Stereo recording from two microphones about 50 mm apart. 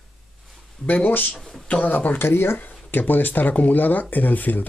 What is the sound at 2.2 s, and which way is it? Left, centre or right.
Speech, left.